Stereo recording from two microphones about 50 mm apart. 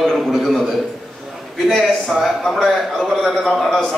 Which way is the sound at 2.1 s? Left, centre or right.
Centre.